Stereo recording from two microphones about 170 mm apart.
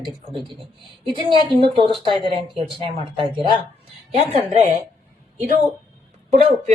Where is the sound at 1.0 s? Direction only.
30° right (ahead or behind).